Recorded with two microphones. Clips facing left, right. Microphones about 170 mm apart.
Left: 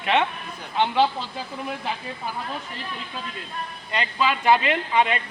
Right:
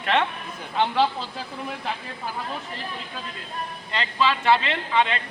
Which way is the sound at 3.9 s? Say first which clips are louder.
Even; 15° left (ahead or behind).